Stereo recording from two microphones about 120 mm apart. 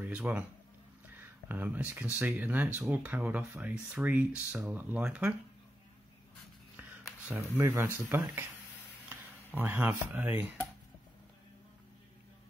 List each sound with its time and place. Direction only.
0.0 s speech: 15° right (ahead or behind)
6.8 s a sound: 15° right (ahead or behind)
7.7 s speech: 20° right (ahead or behind)